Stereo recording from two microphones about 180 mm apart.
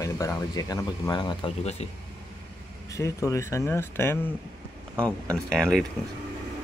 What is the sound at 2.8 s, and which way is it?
Speech, 15° left (ahead or behind).